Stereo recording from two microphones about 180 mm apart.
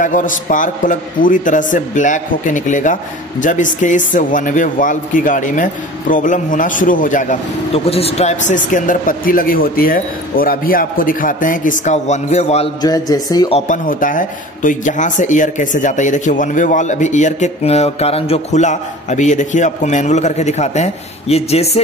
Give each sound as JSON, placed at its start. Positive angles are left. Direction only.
{"t": 0.0, "sound": "a man's voice", "side_deg": 45}
{"t": 12.8, "sound": "speech", "side_deg": 20}
{"t": 13.5, "sound": "a man's voice", "side_deg": 40}